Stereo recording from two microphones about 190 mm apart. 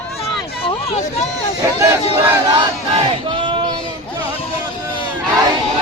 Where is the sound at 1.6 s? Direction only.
15° right (ahead or behind).